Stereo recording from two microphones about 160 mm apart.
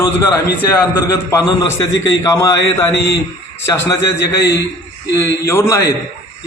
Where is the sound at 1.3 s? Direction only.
20° left (ahead or behind).